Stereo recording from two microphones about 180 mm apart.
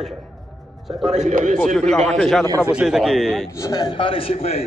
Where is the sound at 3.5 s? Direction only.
20° left (ahead or behind).